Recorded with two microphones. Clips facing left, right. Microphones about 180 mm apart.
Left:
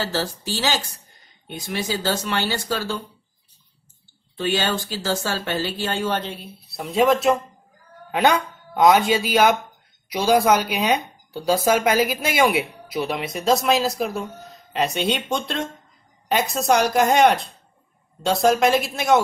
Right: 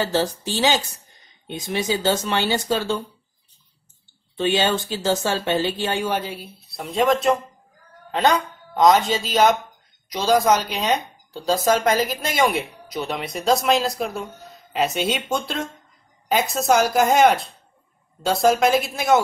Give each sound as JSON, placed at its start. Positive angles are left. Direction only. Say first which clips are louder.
{"t": 0.0, "sound": "speech", "louder": "right 4 dB", "side_deg": -20}
{"t": 4.4, "sound": "a woman's voice", "louder": "right 3 dB", "side_deg": -20}